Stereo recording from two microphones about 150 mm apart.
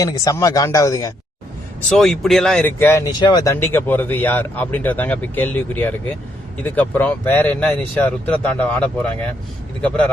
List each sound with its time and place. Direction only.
0.0 s speech: 25° left (ahead or behind)
1.9 s speech: 5° left (ahead or behind)
3.1 s speech: 30° left (ahead or behind)
3.5 s a man's voice: 15° left (ahead or behind)